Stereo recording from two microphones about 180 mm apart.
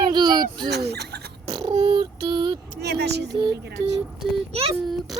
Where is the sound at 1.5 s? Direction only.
25° right (ahead or behind).